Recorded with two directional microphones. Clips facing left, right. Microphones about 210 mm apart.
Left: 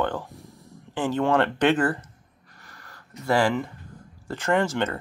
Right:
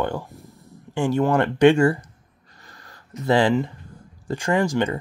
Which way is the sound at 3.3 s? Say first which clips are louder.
Right 4 dB; 20° right (ahead or behind).